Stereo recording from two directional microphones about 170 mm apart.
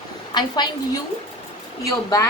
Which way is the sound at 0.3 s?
25° left (ahead or behind).